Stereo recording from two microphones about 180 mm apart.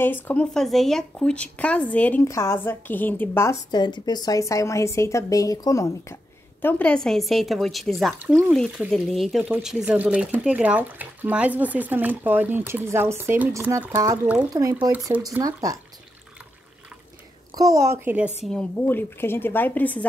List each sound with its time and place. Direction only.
0.0 s speech: 10° left (ahead or behind)
6.6 s speech: 5° left (ahead or behind)
14.5 s speech: 20° right (ahead or behind)
17.6 s speech: 20° right (ahead or behind)
18.4 s speech: 5° left (ahead or behind)